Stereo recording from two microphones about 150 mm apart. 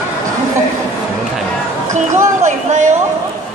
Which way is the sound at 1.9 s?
55° right (ahead or behind).